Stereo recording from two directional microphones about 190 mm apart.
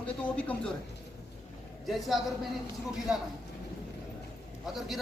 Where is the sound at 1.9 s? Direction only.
Centre (ahead or behind).